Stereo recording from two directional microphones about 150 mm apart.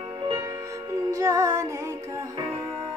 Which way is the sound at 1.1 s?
20° right (ahead or behind).